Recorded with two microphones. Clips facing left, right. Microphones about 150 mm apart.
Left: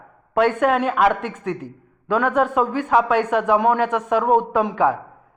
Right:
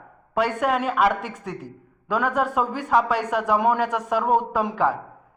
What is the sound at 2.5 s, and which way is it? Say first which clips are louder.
A man's voice: left 3 dB; centre (ahead or behind).